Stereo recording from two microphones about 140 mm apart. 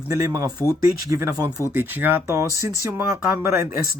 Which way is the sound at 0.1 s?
20° right (ahead or behind).